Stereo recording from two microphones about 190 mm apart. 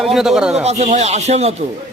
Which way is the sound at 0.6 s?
35° right (ahead or behind).